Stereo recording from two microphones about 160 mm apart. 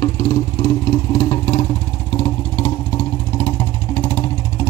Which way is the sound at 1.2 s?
30° left (ahead or behind).